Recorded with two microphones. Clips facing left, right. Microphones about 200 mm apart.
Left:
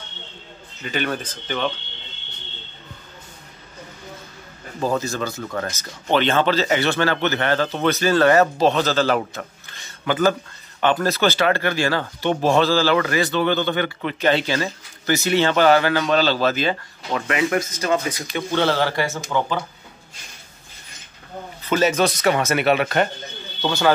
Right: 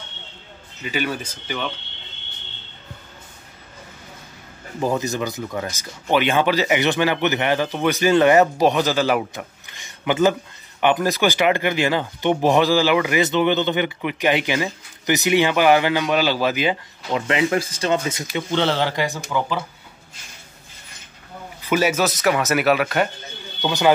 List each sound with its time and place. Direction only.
0.8 s speech: 10° right (ahead or behind)
4.7 s speech: 15° right (ahead or behind)
21.6 s speech: 10° right (ahead or behind)
23.6 s speech: 15° right (ahead or behind)